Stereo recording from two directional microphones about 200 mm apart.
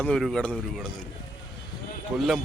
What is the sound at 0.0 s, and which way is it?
Speech, 5° left (ahead or behind).